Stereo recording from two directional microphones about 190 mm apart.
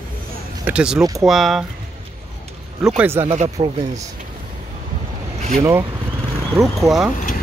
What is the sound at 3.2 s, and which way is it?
Speech, 30° right (ahead or behind).